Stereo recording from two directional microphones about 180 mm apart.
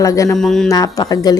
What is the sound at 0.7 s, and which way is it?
Speech, 20° left (ahead or behind).